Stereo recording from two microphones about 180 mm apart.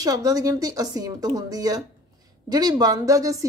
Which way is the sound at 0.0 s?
20° right (ahead or behind).